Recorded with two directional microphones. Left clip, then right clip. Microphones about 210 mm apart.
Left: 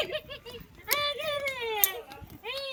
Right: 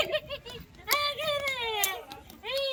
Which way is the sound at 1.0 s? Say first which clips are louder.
Left 1 dB; 35° right (ahead or behind).